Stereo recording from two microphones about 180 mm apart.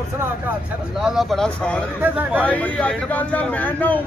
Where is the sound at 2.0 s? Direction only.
10° right (ahead or behind).